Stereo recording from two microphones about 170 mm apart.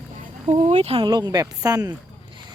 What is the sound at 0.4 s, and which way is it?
Speech, 40° right (ahead or behind).